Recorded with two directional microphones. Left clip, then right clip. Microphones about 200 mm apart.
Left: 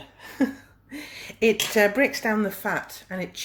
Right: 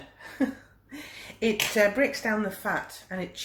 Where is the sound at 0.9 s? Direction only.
50° left (ahead or behind).